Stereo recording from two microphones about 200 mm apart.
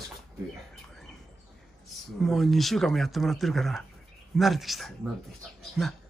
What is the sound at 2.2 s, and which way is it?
Speech, centre (ahead or behind).